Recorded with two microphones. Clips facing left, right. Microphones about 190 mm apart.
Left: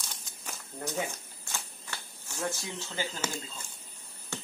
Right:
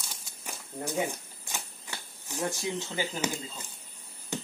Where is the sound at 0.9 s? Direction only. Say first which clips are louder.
Right 5 dB; 15° right (ahead or behind).